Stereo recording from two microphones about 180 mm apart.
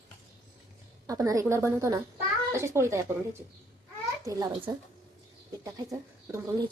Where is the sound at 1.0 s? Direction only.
20° right (ahead or behind).